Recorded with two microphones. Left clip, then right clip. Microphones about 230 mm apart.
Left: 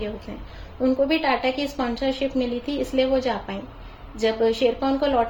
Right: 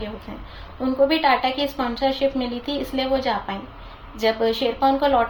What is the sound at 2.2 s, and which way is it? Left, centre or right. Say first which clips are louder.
A woman's voice: right 2 dB; right.